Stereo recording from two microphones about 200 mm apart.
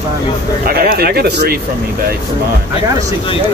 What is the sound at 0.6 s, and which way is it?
Speech, 50° right (ahead or behind).